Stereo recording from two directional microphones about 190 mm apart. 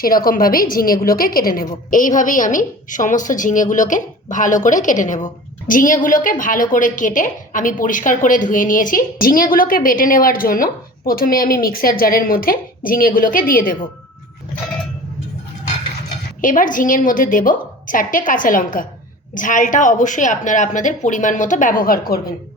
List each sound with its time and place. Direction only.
0.0 s a woman's voice: 50° left (ahead or behind)
16.4 s a woman's voice: 45° left (ahead or behind)